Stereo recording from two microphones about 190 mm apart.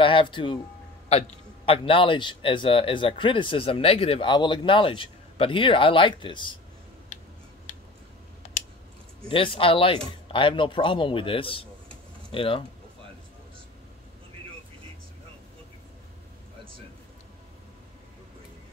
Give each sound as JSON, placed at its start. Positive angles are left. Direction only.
{"t": 0.0, "sound": "a man's voice", "side_deg": 25}
{"t": 9.3, "sound": "speech", "side_deg": 25}